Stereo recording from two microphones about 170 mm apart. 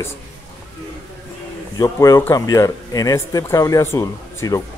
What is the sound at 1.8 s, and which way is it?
Speech, 20° left (ahead or behind).